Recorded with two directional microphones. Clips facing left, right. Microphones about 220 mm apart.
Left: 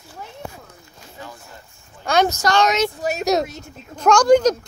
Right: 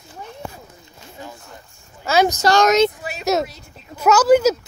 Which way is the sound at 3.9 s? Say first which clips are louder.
Even; 5° right (ahead or behind).